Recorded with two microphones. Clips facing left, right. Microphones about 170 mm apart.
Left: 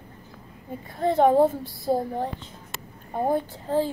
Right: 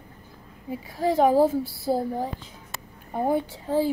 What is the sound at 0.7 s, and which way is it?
A woman's voice, 5° right (ahead or behind).